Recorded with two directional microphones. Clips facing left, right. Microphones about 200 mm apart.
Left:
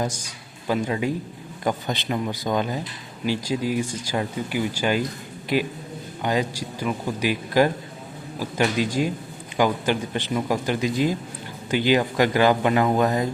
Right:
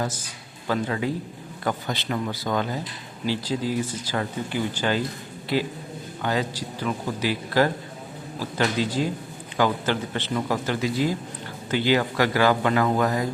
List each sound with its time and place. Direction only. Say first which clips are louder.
0.7 s a man's voice: left 2 dB; 15° left (ahead or behind)